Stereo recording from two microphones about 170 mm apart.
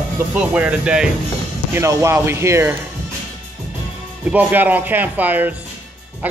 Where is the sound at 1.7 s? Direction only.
15° right (ahead or behind).